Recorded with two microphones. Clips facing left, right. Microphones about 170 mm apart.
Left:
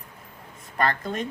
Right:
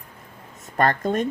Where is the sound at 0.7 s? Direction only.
45° right (ahead or behind).